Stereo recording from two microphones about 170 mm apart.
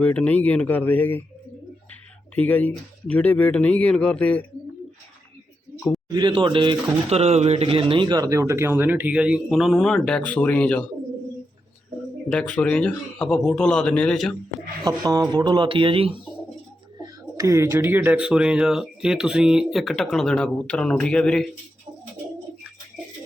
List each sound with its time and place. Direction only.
0.0 s speech: 10° left (ahead or behind)
2.3 s speech: 10° left (ahead or behind)
6.1 s speech: 25° right (ahead or behind); by 10.8 s 10° left (ahead or behind)
12.3 s speech: 5° left (ahead or behind)
14.8 s speech: 20° right (ahead or behind)
17.0 s speech: 20° right (ahead or behind); by 21.4 s 5° left (ahead or behind)